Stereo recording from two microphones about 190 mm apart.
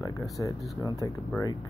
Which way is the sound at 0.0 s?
15° left (ahead or behind).